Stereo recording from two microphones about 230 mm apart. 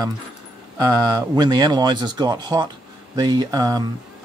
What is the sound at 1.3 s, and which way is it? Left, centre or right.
Speech, centre.